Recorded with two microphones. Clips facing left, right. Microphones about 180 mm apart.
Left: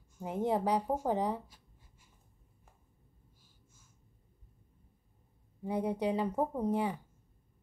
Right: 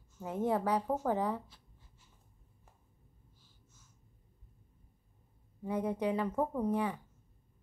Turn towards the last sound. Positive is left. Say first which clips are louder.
# left 1 dB
turn(degrees=20)  # may be behind; listen again after turning